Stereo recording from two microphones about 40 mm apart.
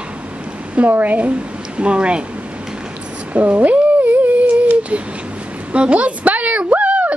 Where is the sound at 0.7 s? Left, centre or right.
Right.